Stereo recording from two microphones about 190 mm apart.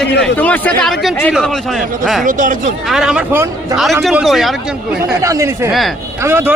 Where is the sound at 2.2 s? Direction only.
45° right (ahead or behind).